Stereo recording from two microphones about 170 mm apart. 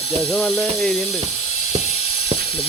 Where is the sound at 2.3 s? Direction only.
35° right (ahead or behind).